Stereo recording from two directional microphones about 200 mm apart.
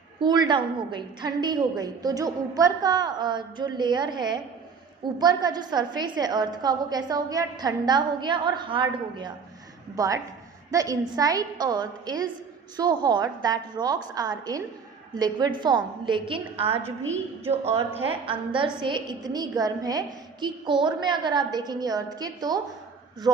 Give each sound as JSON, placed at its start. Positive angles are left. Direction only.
{"t": 0.2, "sound": "a woman's voice", "side_deg": -20}